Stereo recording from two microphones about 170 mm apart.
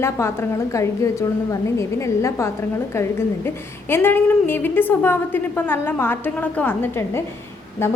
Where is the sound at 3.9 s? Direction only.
10° left (ahead or behind).